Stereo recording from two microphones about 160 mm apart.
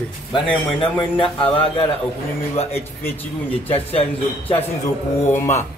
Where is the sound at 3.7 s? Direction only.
35° left (ahead or behind).